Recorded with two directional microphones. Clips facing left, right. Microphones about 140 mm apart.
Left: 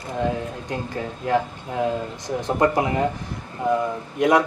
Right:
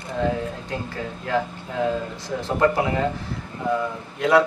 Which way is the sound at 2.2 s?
20° left (ahead or behind).